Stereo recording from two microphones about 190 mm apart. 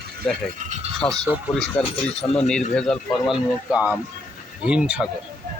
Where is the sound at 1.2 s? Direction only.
5° left (ahead or behind).